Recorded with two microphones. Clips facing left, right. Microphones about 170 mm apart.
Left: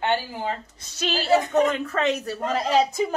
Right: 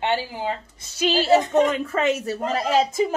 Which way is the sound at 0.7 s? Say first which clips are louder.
Right 6 dB; 10° right (ahead or behind).